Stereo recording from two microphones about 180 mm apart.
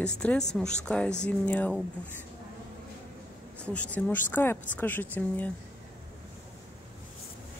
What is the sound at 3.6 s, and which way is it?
Speech, 5° left (ahead or behind).